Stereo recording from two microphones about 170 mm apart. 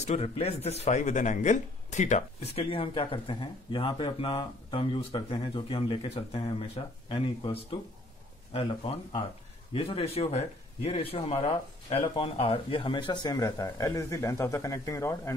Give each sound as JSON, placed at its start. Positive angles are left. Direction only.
{"t": 0.0, "sound": "speech", "side_deg": 40}